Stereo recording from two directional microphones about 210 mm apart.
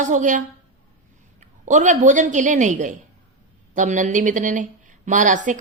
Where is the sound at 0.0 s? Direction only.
35° right (ahead or behind).